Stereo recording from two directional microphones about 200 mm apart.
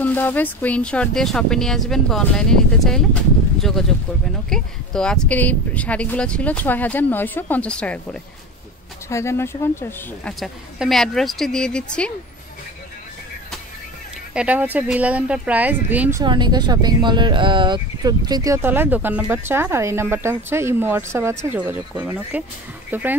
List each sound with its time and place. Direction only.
0.0 s speech: 10° left (ahead or behind)
10.4 s speech: centre (ahead or behind)
14.3 s speech: 5° right (ahead or behind)